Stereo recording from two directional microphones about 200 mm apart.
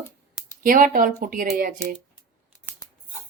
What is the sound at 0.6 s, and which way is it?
Speech, 45° right (ahead or behind).